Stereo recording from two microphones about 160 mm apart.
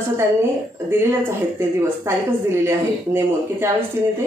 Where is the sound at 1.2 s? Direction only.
15° right (ahead or behind).